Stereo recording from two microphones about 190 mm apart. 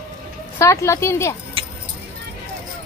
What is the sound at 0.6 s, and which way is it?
Speech, 15° left (ahead or behind).